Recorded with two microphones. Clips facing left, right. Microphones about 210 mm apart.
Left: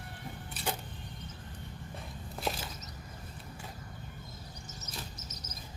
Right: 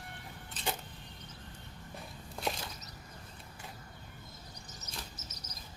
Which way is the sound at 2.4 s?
5° left (ahead or behind).